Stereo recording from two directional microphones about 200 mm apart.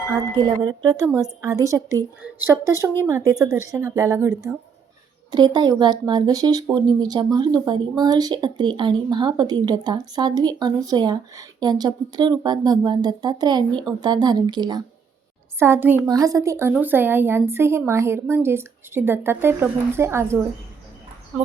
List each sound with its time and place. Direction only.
0.1 s a woman's voice: 20° right (ahead or behind)